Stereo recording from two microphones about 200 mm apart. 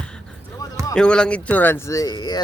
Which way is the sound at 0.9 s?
5° left (ahead or behind).